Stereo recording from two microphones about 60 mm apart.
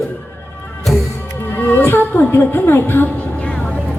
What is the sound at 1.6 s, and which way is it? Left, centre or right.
Music, left.